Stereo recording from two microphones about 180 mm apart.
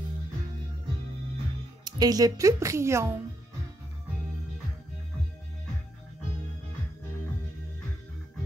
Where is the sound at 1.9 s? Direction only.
20° right (ahead or behind).